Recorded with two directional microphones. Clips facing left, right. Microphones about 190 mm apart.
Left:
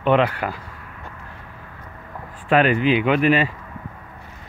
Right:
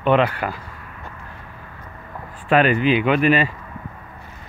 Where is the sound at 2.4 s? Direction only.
15° left (ahead or behind).